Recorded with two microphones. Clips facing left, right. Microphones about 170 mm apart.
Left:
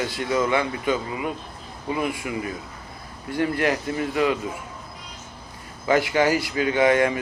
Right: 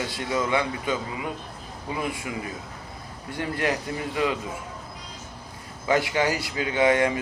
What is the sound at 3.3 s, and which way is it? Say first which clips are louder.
Speech: left 4 dB; 25° right (ahead or behind).